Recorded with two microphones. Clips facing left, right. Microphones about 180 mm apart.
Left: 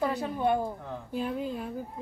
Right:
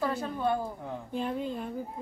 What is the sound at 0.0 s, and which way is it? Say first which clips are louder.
Speech: left 2 dB; 15° left (ahead or behind).